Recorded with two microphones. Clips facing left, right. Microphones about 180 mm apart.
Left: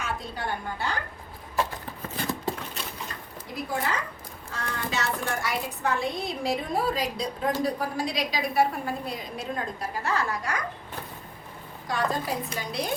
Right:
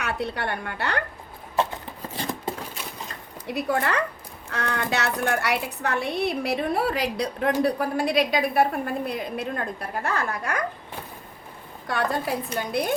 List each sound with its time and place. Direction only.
0.0 s a woman's voice: 70° right (ahead or behind)
3.4 s a woman's voice: 70° right (ahead or behind)
11.9 s a woman's voice: 60° right (ahead or behind)